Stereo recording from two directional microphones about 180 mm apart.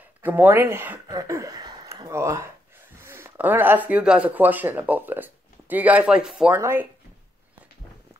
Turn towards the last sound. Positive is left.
turn(degrees=-15)  # may be behind; listen again after turning